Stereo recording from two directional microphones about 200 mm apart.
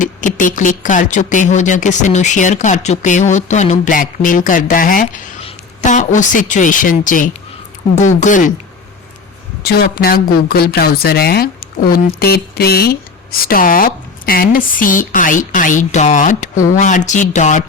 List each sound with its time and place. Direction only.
0.0 s a woman's voice: 40° left (ahead or behind)
9.6 s speech: 50° left (ahead or behind)